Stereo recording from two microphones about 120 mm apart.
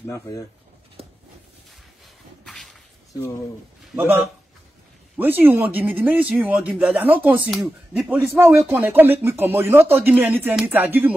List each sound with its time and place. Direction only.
0.0 s speech: 25° left (ahead or behind)
2.4 s whip: centre (ahead or behind)
3.9 s a man's voice: 20° right (ahead or behind)
5.2 s speech: 15° right (ahead or behind)